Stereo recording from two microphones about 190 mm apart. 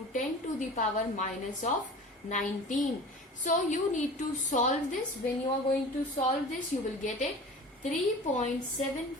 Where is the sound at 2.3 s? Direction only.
40° left (ahead or behind).